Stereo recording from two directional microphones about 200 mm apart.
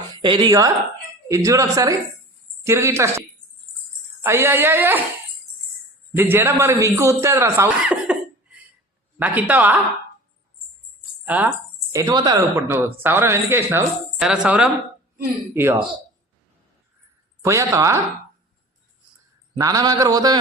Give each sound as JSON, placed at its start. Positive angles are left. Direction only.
{"t": 0.2, "sound": "a sound", "side_deg": -20}
{"t": 1.3, "sound": "speech", "side_deg": -15}
{"t": 6.1, "sound": "speech", "side_deg": -10}
{"t": 11.3, "sound": "speech", "side_deg": -10}
{"t": 17.4, "sound": "speech", "side_deg": -15}
{"t": 19.5, "sound": "a sound", "side_deg": -15}